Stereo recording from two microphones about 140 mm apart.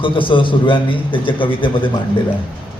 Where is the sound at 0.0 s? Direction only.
35° left (ahead or behind).